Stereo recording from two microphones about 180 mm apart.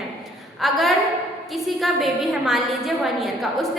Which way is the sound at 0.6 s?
Centre (ahead or behind).